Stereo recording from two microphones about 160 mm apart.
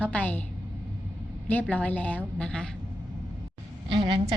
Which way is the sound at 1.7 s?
10° left (ahead or behind).